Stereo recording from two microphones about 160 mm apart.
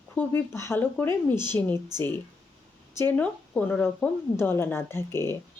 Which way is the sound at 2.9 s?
10° left (ahead or behind).